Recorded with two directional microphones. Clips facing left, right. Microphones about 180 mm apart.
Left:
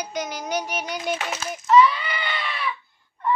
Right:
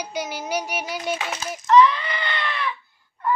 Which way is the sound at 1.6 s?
5° left (ahead or behind).